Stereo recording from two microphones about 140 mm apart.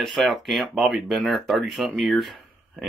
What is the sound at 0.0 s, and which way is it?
Speech, centre (ahead or behind).